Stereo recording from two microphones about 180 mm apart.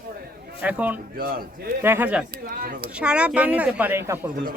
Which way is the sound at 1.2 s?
55° right (ahead or behind).